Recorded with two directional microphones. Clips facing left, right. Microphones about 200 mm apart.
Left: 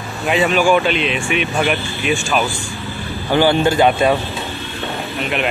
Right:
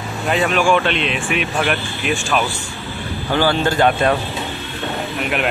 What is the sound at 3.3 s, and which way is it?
Speech, 15° left (ahead or behind).